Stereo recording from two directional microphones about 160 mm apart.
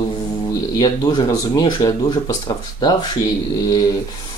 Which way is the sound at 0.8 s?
30° left (ahead or behind).